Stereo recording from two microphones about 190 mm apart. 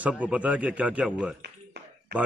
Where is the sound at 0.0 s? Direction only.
5° right (ahead or behind).